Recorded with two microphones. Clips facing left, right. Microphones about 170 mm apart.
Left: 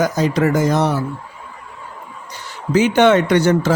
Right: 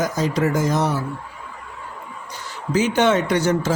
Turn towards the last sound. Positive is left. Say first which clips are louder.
# left 5 dB
turn(degrees=70)  # may be behind; listen again after turning